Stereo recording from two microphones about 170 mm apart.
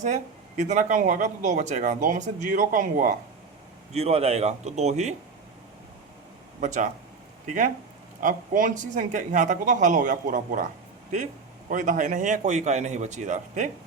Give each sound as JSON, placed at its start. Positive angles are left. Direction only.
{"t": 0.0, "sound": "speech", "side_deg": -45}
{"t": 3.9, "sound": "speech", "side_deg": -35}
{"t": 6.6, "sound": "speech", "side_deg": -45}
{"t": 11.7, "sound": "speech", "side_deg": -50}